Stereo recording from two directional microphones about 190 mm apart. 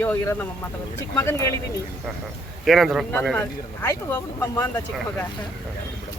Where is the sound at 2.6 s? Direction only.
Centre (ahead or behind); by 4.8 s 15° left (ahead or behind).